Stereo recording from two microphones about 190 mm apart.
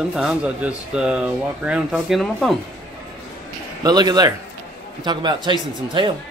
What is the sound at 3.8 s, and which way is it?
A man's voice, 20° right (ahead or behind).